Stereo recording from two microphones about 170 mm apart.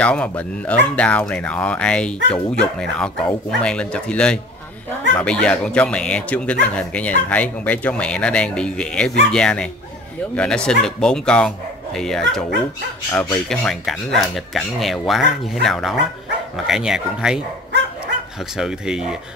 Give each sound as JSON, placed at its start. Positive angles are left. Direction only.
{"t": 0.0, "sound": "speech", "side_deg": 5}
{"t": 13.1, "sound": "speech", "side_deg": 15}
{"t": 13.5, "sound": "speech", "side_deg": 0}
{"t": 18.4, "sound": "speech", "side_deg": -5}